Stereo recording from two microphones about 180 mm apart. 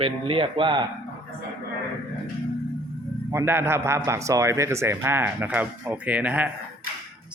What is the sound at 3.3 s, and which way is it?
A man's voice, 15° right (ahead or behind).